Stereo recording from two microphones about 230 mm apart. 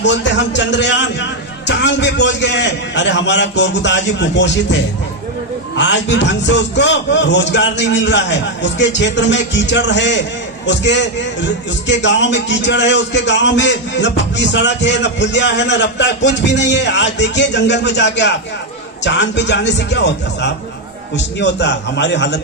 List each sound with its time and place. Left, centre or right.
0.0 s a man's voice: left
5.8 s a man's voice: left